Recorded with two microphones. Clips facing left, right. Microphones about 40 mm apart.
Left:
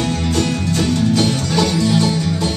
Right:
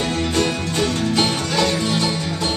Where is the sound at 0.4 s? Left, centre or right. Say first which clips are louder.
Left 1 dB; right.